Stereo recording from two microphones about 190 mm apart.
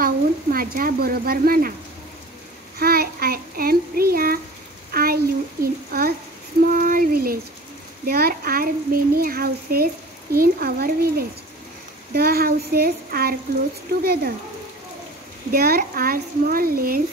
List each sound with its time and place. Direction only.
0.0 s speech: 50° right (ahead or behind)
2.8 s child singing: 55° right (ahead or behind)
4.9 s a sound: 50° right (ahead or behind)
14.0 s speech: 55° right (ahead or behind)
15.5 s a child's voice: 50° right (ahead or behind)